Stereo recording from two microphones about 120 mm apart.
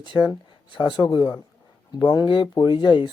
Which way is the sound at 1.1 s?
40° left (ahead or behind).